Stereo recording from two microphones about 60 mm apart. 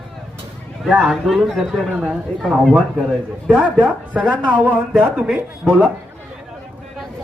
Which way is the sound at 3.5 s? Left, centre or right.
Centre.